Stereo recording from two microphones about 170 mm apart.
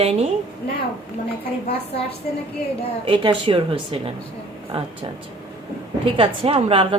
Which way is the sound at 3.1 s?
30° right (ahead or behind).